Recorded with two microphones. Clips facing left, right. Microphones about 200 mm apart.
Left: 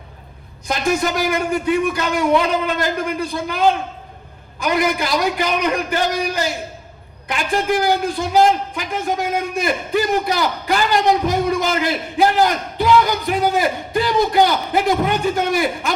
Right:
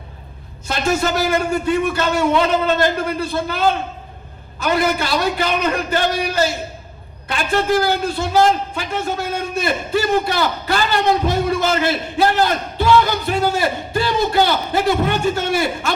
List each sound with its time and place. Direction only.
0.7 s a man's voice: 15° left (ahead or behind)